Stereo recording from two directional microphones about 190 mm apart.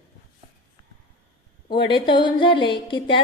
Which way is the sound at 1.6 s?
25° left (ahead or behind).